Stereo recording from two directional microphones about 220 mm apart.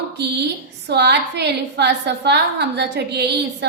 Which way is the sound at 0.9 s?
50° right (ahead or behind).